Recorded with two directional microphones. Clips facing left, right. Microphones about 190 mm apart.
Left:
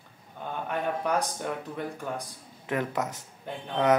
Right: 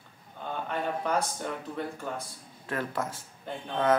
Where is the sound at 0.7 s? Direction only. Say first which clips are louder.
Left 2 dB; 15° left (ahead or behind).